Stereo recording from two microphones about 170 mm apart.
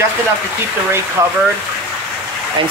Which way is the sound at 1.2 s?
20° right (ahead or behind).